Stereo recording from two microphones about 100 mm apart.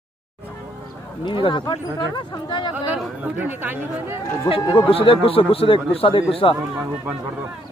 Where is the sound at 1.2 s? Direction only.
55° left (ahead or behind).